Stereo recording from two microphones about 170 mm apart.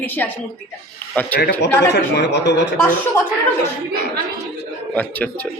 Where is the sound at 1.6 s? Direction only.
90° left.